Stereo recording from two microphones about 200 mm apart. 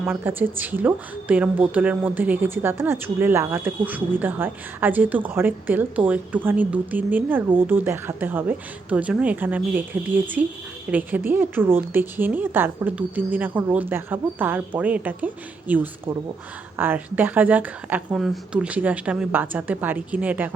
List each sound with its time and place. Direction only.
0.0 s a woman's voice: 10° right (ahead or behind)